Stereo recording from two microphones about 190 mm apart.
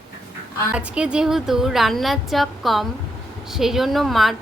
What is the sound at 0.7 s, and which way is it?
A woman's voice, 5° right (ahead or behind).